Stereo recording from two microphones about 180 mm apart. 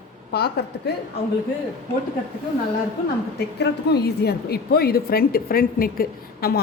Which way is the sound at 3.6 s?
65° left (ahead or behind).